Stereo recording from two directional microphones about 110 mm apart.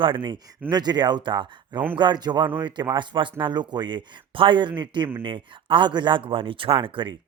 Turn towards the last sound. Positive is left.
turn(degrees=-50)  # may be behind; listen again after turning